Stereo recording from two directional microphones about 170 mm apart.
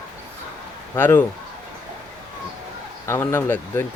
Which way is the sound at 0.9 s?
10° left (ahead or behind).